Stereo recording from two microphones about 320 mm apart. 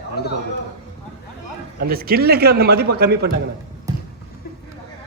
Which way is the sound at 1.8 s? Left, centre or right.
Right.